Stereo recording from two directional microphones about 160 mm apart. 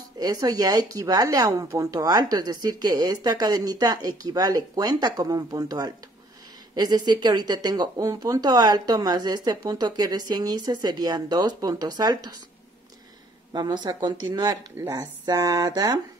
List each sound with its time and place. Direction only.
0.2 s speech: 25° right (ahead or behind)
13.5 s speech: 25° right (ahead or behind)